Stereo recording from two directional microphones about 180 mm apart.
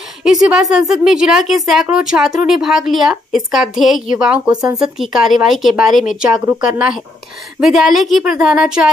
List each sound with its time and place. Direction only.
0.2 s a woman's voice: 5° right (ahead or behind)
4.5 s speech: 20° right (ahead or behind)
4.7 s a woman's voice: centre (ahead or behind)
6.4 s speech: 10° right (ahead or behind)
7.6 s a woman's voice: centre (ahead or behind)